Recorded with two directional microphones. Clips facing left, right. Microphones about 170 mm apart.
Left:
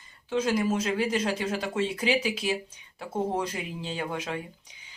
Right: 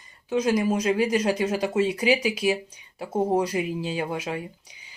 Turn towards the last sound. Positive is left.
turn(degrees=-10)  # may be behind; listen again after turning